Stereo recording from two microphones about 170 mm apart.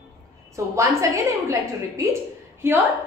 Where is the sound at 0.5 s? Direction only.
20° right (ahead or behind).